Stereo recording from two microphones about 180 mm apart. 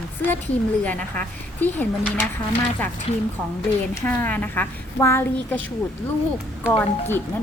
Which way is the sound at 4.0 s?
10° left (ahead or behind).